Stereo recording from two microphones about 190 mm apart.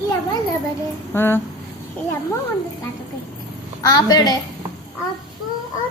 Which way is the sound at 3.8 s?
20° left (ahead or behind).